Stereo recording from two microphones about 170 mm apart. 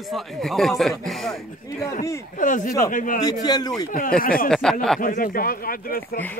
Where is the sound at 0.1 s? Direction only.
Centre (ahead or behind).